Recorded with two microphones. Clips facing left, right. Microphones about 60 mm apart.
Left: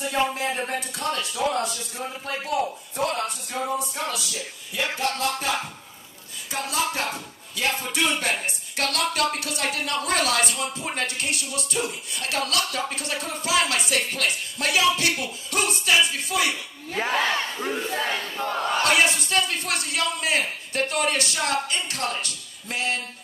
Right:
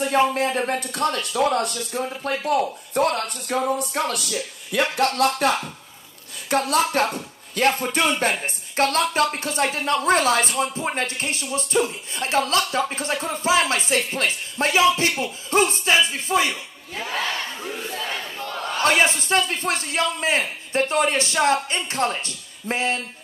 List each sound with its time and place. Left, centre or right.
0.3 s a man's voice: right
6.5 s speech: right
7.9 s a man's voice: right
16.9 s battle cry: left
18.8 s a man's voice: right